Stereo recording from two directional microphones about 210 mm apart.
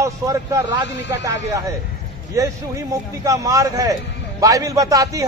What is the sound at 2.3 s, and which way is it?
A man's voice, 15° right (ahead or behind).